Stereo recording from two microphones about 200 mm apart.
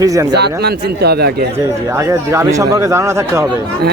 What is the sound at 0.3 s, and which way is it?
Speech, 55° right (ahead or behind).